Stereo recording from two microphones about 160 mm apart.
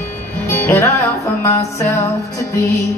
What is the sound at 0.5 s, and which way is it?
Music, 15° left (ahead or behind).